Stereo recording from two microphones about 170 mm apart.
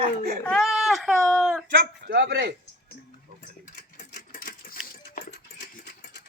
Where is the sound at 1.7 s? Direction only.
90° right.